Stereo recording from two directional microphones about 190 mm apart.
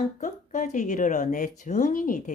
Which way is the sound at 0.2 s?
40° left (ahead or behind).